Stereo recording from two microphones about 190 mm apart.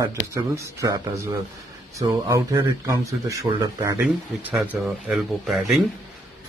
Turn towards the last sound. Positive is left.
turn(degrees=0)  # may be behind; listen again after turning